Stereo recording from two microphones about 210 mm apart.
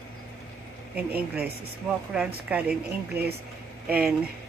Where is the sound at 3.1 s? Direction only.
50° right (ahead or behind).